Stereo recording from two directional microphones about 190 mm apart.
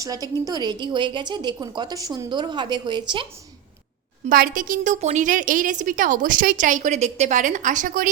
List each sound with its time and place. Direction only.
0.0 s a woman's voice: 20° right (ahead or behind)
4.3 s a woman's voice: 50° right (ahead or behind)